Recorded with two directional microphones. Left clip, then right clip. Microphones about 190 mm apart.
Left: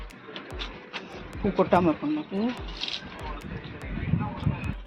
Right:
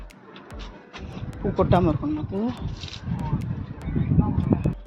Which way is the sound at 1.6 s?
15° right (ahead or behind).